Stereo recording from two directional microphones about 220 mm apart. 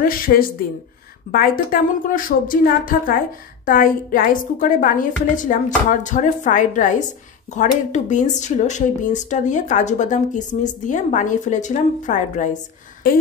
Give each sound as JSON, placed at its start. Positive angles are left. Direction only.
{"t": 0.0, "sound": "speech", "side_deg": 40}